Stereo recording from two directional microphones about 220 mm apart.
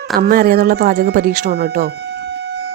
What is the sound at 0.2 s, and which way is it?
Speech, 40° right (ahead or behind).